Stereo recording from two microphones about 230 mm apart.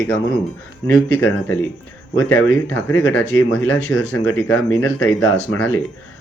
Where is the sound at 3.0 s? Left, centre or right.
Centre.